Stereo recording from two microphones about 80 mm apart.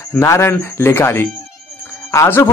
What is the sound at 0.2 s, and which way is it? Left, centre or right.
A man's voice, left.